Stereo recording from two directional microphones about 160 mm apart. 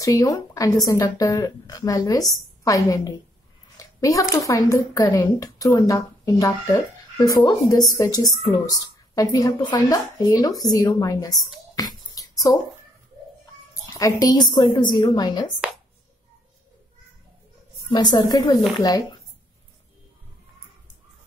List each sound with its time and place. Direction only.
0.0 s speech: 20° left (ahead or behind)
13.9 s speech: 20° left (ahead or behind)
15.6 s a sound: 5° right (ahead or behind)
17.8 s speech: 25° left (ahead or behind)